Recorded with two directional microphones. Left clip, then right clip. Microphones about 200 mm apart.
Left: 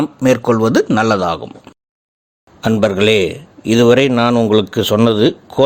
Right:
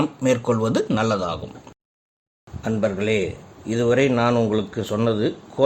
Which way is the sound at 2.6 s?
50° left (ahead or behind).